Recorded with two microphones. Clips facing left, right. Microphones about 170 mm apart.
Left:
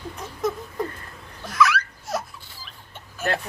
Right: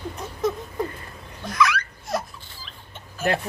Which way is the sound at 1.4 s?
5° left (ahead or behind).